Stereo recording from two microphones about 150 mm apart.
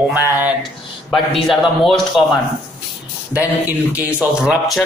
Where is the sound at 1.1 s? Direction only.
Centre (ahead or behind).